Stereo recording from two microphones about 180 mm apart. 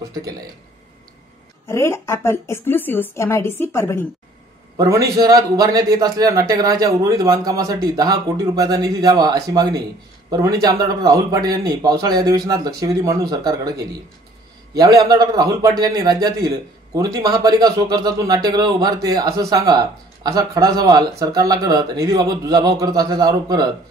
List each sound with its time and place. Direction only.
1.7 s a woman's voice: 15° left (ahead or behind)
4.7 s a man's voice: 20° right (ahead or behind)